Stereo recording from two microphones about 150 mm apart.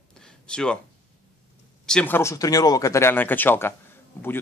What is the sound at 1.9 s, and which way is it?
Speech, 10° left (ahead or behind).